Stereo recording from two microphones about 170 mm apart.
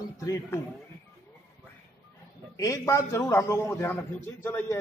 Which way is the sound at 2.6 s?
20° left (ahead or behind).